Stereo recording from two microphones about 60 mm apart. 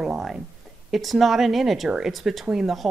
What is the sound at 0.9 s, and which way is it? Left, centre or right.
Speech, centre.